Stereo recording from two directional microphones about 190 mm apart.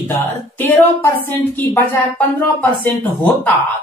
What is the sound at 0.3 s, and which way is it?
Speech, 10° left (ahead or behind).